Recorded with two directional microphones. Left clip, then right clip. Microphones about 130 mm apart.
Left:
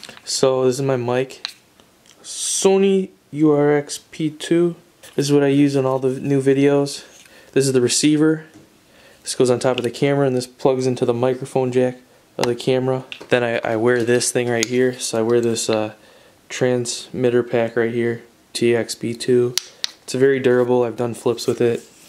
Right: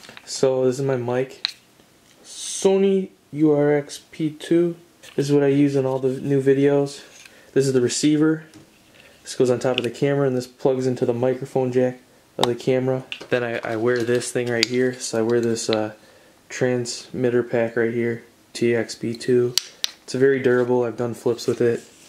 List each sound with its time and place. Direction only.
0.0 s speech: 15° left (ahead or behind)
13.3 s speech: 30° left (ahead or behind)
14.4 s speech: 15° left (ahead or behind)